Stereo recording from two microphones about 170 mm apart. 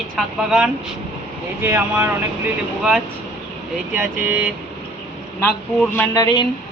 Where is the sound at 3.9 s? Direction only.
10° right (ahead or behind).